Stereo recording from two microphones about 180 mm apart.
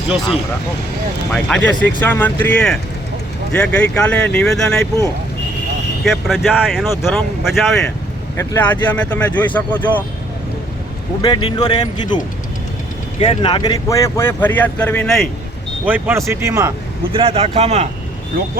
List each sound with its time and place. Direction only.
1.3 s speech: 5° left (ahead or behind)
6.1 s speech: centre (ahead or behind)
11.2 s speech: 25° left (ahead or behind); by 15.3 s centre (ahead or behind)
15.9 s speech: 15° right (ahead or behind); by 17.8 s 35° right (ahead or behind)